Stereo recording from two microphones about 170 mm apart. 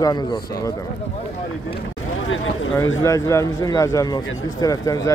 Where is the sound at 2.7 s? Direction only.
20° left (ahead or behind).